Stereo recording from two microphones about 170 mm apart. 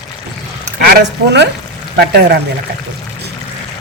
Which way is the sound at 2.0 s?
70° right (ahead or behind).